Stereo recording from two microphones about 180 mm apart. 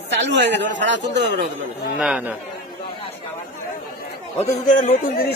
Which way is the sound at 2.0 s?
5° right (ahead or behind).